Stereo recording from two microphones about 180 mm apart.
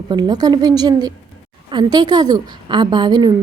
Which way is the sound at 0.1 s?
20° right (ahead or behind).